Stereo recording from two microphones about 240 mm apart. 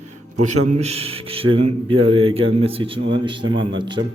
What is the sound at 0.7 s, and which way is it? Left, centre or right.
A man's voice, right.